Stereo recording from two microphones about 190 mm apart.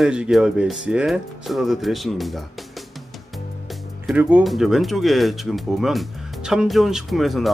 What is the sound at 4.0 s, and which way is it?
Speech, 5° right (ahead or behind).